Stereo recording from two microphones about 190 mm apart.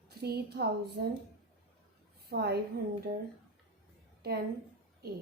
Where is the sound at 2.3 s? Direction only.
55° right (ahead or behind).